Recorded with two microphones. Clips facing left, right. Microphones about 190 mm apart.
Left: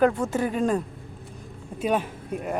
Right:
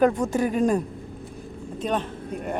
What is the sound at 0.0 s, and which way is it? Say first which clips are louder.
Speech: right 1 dB; 15° right (ahead or behind).